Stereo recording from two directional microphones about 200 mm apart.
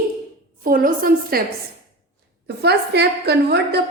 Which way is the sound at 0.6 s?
45° right (ahead or behind).